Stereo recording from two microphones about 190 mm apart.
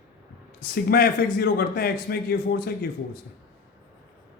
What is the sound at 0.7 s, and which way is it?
A man's voice, 55° left (ahead or behind).